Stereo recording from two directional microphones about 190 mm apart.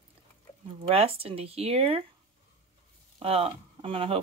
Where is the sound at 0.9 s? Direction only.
30° right (ahead or behind).